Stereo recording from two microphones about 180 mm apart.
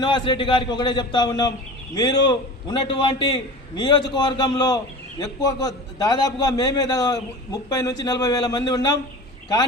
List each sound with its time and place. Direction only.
0.0 s a man's voice: 25° left (ahead or behind)